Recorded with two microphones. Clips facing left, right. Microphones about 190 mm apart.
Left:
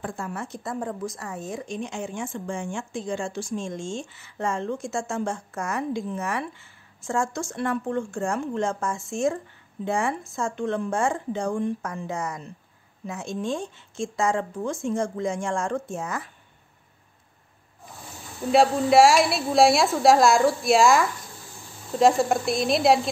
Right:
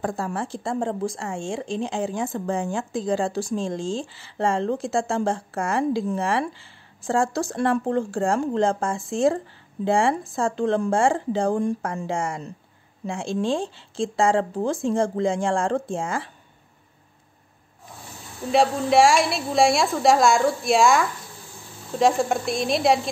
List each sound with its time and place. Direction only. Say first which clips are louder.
0.0 s speech: right 5 dB; 35° right (ahead or behind)
18.5 s a woman's voice: left 1 dB; centre (ahead or behind)